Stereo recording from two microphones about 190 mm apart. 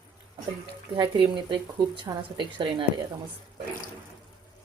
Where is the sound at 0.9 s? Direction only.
25° right (ahead or behind).